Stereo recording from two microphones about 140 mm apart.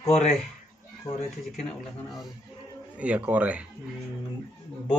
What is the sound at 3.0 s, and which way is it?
Speech, 10° right (ahead or behind).